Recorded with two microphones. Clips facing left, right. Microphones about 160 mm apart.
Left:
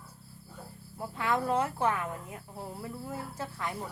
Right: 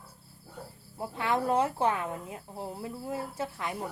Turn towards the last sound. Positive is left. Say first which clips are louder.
# right 2 dB
turn(degrees=-15)  # may be behind; listen again after turning